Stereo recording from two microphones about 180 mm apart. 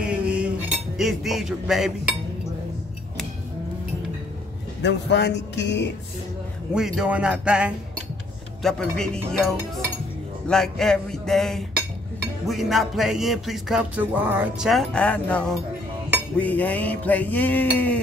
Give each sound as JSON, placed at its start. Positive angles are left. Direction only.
{"t": 0.0, "sound": "cutlery", "side_deg": -5}
{"t": 4.8, "sound": "speech", "side_deg": 75}
{"t": 6.7, "sound": "music", "side_deg": -5}
{"t": 10.5, "sound": "music", "side_deg": 5}
{"t": 14.7, "sound": "music", "side_deg": 5}
{"t": 16.3, "sound": "a sound", "side_deg": 10}